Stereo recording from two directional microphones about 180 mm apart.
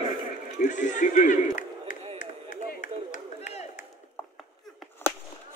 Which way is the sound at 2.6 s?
45° left (ahead or behind).